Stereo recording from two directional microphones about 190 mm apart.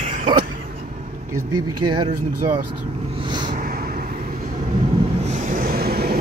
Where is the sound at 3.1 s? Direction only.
25° right (ahead or behind).